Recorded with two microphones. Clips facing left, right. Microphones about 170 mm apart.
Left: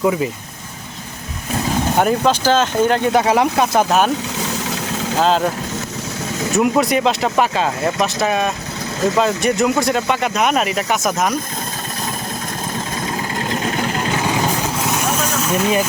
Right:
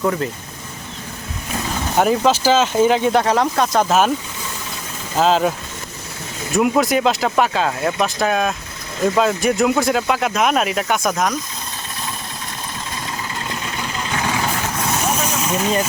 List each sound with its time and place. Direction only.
0.0 s speech: 10° left (ahead or behind)
2.0 s speech: centre (ahead or behind)
4.4 s vehicle: 80° left
5.2 s speech: centre (ahead or behind)
6.6 s speech: centre (ahead or behind)
13.6 s vehicle: 45° left (ahead or behind)
15.2 s vehicle: 10° right (ahead or behind)